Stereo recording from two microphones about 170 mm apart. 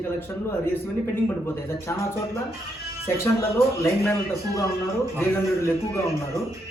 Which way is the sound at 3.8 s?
15° left (ahead or behind).